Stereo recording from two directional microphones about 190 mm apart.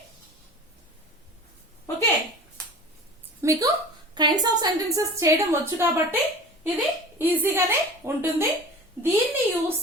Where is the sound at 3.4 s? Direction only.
15° right (ahead or behind).